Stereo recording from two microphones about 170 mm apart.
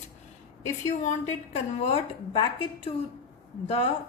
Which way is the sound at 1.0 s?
40° left (ahead or behind).